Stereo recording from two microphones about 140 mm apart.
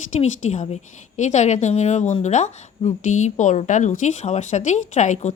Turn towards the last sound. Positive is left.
turn(degrees=60)  # may be behind; listen again after turning